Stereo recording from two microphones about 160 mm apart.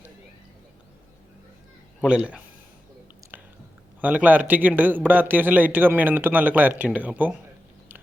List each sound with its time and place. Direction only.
2.0 s a man's voice: 5° right (ahead or behind)
3.3 s chewing: 10° right (ahead or behind)
4.0 s a man's voice: 10° right (ahead or behind)